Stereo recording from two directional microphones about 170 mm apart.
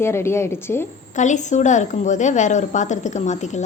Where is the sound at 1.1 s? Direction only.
45° left (ahead or behind).